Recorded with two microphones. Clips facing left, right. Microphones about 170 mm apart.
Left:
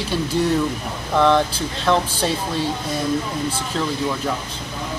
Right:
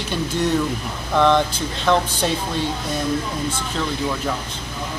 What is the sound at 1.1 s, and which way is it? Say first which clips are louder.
Speech: even; 5° left (ahead or behind).